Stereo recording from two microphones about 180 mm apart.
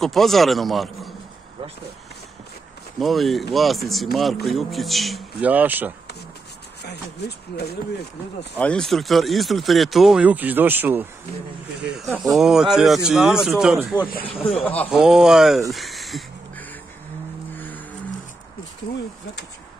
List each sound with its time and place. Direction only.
0.0 s speech: centre (ahead or behind)
3.0 s speech: centre (ahead or behind)
6.8 s speech: 65° left (ahead or behind)
8.5 s speech: 5° left (ahead or behind); by 11.1 s 10° right (ahead or behind)
12.4 s speech: centre (ahead or behind)
14.2 s speech: 5° left (ahead or behind)
15.7 s a sound: centre (ahead or behind)
17.6 s music: 10° left (ahead or behind)